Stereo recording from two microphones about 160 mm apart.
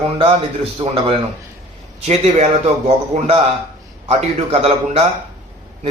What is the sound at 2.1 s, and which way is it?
A man's voice, 45° right (ahead or behind).